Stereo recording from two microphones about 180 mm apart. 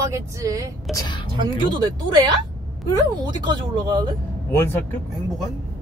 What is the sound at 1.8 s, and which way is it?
Speech, 25° right (ahead or behind).